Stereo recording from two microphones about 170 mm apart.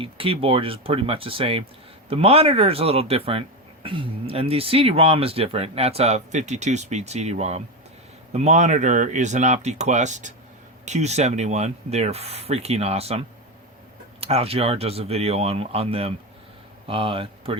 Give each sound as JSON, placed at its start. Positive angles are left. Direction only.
{"t": 0.0, "sound": "speech", "side_deg": -30}